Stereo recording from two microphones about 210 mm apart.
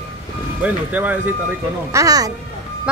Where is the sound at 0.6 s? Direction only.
10° right (ahead or behind).